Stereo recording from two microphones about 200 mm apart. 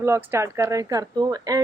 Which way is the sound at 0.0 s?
10° right (ahead or behind).